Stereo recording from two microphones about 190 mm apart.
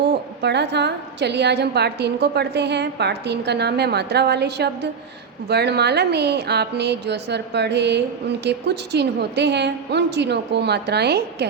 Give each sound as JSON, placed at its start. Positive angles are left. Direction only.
{"t": 0.1, "sound": "a woman's voice", "side_deg": -65}